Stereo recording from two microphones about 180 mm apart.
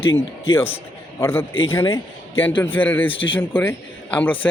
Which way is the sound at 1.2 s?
15° left (ahead or behind).